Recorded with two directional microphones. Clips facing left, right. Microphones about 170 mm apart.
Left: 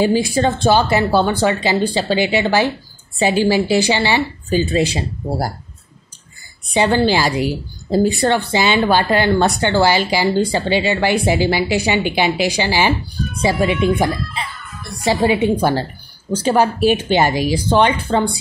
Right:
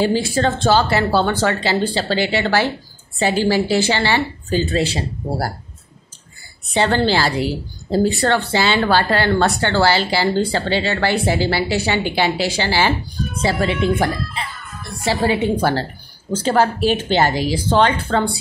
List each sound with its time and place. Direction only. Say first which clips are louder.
0.0 s a woman's voice: left 2 dB; 15° left (ahead or behind)
6.7 s a woman's voice: left 2 dB; 15° left (ahead or behind)